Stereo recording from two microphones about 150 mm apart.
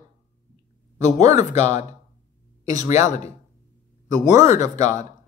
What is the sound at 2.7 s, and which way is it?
Speech, 20° right (ahead or behind).